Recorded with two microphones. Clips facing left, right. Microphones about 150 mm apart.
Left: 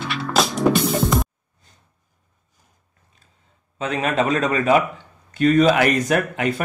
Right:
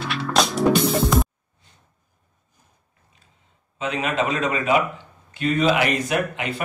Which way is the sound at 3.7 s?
45° left (ahead or behind).